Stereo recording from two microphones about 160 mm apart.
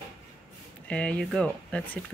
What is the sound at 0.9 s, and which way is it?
Speech, 5° left (ahead or behind).